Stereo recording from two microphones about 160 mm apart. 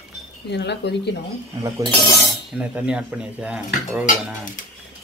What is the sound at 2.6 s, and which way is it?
Speech, 5° right (ahead or behind).